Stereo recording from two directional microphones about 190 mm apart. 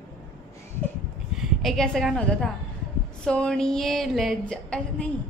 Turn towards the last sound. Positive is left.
turn(degrees=5)  # may be behind; listen again after turning